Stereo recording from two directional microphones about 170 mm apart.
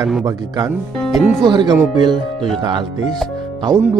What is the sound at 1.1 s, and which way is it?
Speech, centre (ahead or behind).